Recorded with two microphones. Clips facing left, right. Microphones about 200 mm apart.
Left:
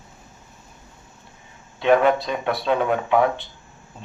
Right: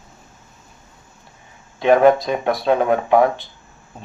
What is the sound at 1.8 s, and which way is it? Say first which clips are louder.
Speech: right 4 dB; 40° right (ahead or behind).